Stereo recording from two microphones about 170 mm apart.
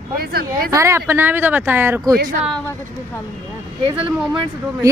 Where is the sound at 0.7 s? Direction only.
15° right (ahead or behind).